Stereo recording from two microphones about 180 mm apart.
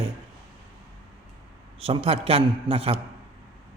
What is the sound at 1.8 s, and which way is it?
A man's voice, 35° right (ahead or behind).